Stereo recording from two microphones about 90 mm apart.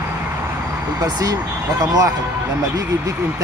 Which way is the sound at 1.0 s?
45° right (ahead or behind).